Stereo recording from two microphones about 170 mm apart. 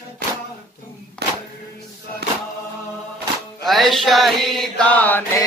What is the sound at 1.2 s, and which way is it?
Music, 70° right (ahead or behind).